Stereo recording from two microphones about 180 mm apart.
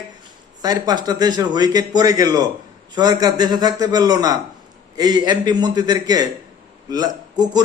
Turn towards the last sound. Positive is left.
turn(degrees=-25)  # may be behind; listen again after turning